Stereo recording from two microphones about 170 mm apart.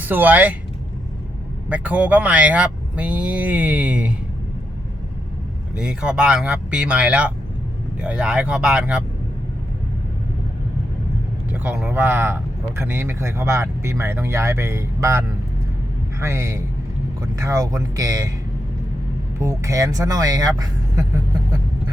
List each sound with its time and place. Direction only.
0.0 s speech: 10° right (ahead or behind)
1.7 s speech: 10° right (ahead or behind)
5.7 s speech: 5° right (ahead or behind)
11.5 s speech: 10° right (ahead or behind)
16.2 s speech: 15° right (ahead or behind)
19.4 s speech: 20° right (ahead or behind)